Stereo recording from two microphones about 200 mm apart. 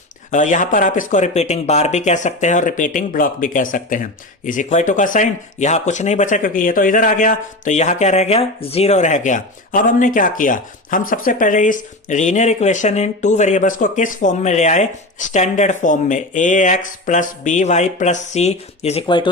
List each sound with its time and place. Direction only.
0.3 s speech: 40° left (ahead or behind)